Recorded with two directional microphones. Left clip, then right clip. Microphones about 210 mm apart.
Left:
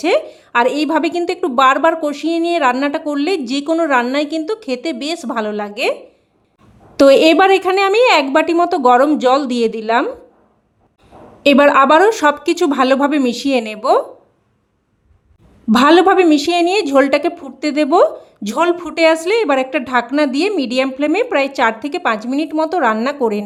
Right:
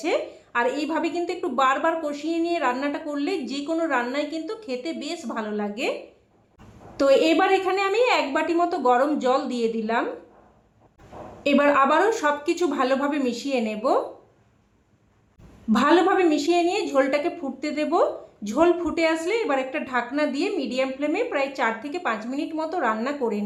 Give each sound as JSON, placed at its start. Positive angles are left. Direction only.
{"t": 0.0, "sound": "a woman's voice", "side_deg": 50}
{"t": 6.9, "sound": "a woman's voice", "side_deg": 50}
{"t": 11.4, "sound": "a woman's voice", "side_deg": 50}
{"t": 15.7, "sound": "a woman's voice", "side_deg": 50}